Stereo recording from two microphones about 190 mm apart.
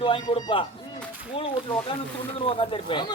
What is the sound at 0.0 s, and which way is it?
Speech, 30° left (ahead or behind).